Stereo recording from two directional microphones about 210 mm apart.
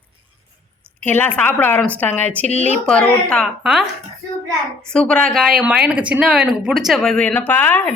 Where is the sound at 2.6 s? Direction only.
35° right (ahead or behind).